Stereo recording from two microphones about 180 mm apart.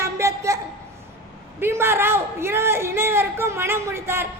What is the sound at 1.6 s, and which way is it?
A man's voice, 15° right (ahead or behind).